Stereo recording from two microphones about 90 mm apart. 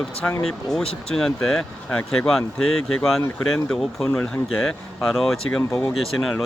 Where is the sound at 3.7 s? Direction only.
5° left (ahead or behind).